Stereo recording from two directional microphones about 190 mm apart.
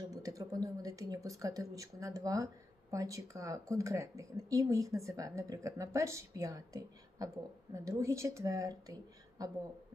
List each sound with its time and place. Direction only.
0.1 s speech: 20° right (ahead or behind)